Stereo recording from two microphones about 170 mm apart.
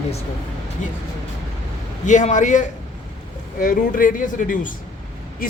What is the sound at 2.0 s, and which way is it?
Speech, 45° left (ahead or behind).